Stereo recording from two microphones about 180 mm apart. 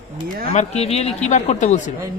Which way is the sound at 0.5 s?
40° left (ahead or behind).